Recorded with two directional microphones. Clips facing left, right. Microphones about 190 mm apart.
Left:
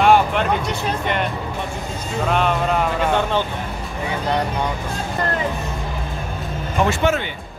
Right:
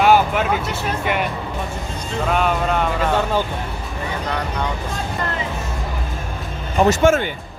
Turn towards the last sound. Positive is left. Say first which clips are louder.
# right 5 dB
turn(degrees=-45)  # may be behind; listen again after turning